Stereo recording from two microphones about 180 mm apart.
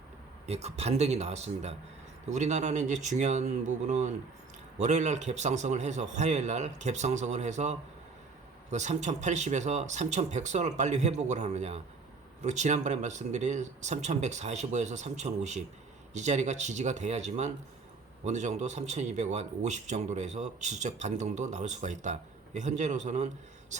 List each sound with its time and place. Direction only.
0.4 s a man's voice: 35° right (ahead or behind)